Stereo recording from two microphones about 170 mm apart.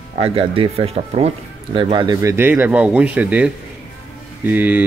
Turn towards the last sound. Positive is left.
turn(degrees=-10)  # may be behind; listen again after turning